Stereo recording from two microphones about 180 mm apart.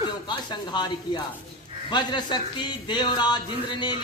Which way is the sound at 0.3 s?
25° left (ahead or behind).